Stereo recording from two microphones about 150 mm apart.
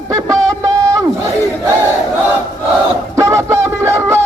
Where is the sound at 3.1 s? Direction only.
20° right (ahead or behind).